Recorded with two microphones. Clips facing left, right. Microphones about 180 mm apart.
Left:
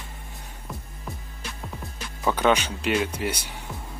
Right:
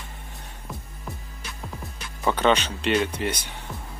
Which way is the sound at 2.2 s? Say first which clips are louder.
Even; 10° left (ahead or behind).